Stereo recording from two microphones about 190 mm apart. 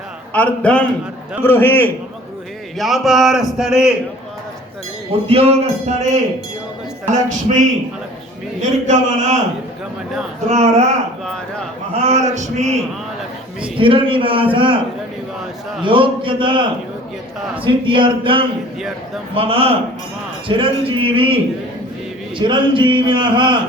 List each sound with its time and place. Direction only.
0.3 s a man's voice: 5° left (ahead or behind)
2.7 s speech: centre (ahead or behind)
5.3 s speech: 35° right (ahead or behind)
8.9 s speech: 40° right (ahead or behind)
10.5 s speech: 35° right (ahead or behind)
11.9 s a man's voice: 35° right (ahead or behind)
15.8 s a man's voice: 25° right (ahead or behind)
22.4 s a man's voice: 25° right (ahead or behind)